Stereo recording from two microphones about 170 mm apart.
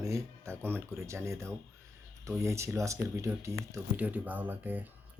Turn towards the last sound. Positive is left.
turn(degrees=-10)  # may be behind; listen again after turning